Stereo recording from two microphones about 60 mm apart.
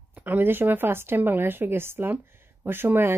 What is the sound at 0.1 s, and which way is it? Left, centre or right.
Speech, right.